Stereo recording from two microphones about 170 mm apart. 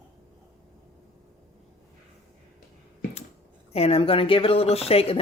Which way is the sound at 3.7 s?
35° left (ahead or behind).